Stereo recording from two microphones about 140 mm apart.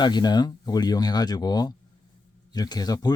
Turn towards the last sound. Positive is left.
turn(degrees=30)  # may be behind; listen again after turning